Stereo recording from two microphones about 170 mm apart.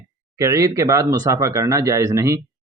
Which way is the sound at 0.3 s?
20° right (ahead or behind).